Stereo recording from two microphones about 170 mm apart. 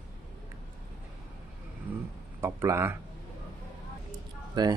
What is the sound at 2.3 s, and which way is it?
Speech, 15° right (ahead or behind).